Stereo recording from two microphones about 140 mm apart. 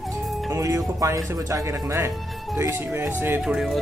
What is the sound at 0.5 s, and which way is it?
Speech, 20° right (ahead or behind).